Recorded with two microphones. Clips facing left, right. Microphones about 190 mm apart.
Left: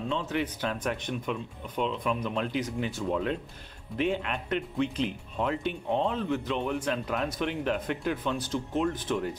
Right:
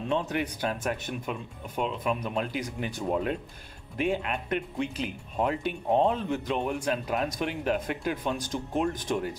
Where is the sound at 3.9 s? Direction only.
10° right (ahead or behind).